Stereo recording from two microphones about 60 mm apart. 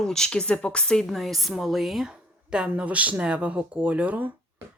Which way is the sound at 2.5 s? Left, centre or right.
Centre.